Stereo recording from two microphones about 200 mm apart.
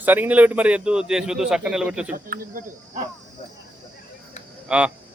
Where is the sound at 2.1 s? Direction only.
45° right (ahead or behind).